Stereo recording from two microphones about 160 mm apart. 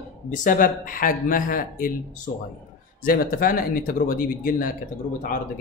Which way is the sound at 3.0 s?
65° left (ahead or behind).